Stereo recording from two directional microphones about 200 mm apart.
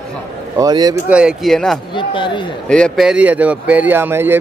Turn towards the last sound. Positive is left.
turn(degrees=-10)  # may be behind; listen again after turning